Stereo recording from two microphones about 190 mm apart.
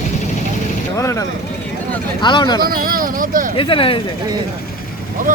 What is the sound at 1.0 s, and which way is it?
Speech, 15° left (ahead or behind).